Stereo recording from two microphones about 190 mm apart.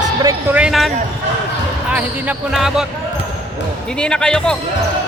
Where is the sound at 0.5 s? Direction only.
Centre (ahead or behind).